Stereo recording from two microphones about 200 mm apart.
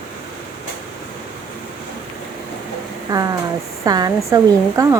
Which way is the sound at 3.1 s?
20° right (ahead or behind).